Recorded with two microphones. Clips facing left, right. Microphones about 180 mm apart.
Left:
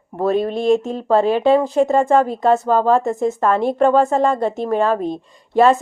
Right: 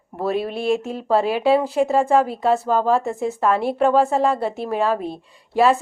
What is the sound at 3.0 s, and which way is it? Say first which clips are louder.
Speech: left 4 dB; 40° left (ahead or behind).